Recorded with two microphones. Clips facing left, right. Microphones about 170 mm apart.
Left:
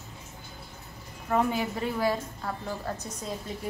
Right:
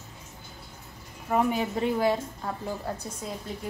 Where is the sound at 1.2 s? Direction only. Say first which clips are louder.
Right 1 dB; 10° right (ahead or behind).